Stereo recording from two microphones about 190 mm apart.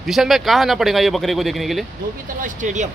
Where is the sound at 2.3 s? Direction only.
40° right (ahead or behind).